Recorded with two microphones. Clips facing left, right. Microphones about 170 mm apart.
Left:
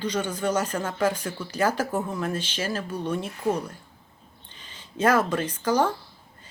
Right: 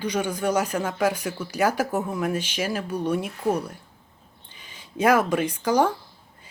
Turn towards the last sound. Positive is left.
turn(degrees=-10)  # may be behind; listen again after turning